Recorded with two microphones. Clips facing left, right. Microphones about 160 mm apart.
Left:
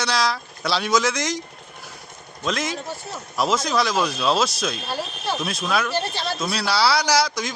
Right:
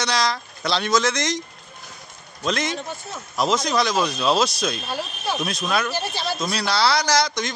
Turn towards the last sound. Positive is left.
turn(degrees=5)  # may be behind; listen again after turning